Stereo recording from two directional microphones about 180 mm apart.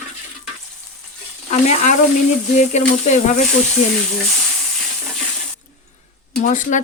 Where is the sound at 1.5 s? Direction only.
40° left (ahead or behind).